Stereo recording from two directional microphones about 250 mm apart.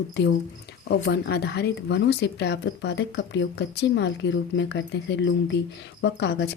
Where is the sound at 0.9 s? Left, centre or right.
Left.